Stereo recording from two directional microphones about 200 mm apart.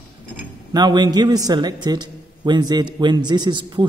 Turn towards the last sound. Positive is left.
turn(degrees=-20)  # may be behind; listen again after turning